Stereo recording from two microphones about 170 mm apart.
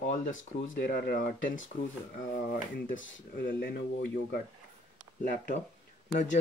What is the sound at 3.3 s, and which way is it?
Speech, 60° left (ahead or behind).